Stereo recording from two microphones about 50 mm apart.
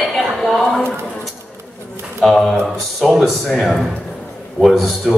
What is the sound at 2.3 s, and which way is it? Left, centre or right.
A man's voice, centre.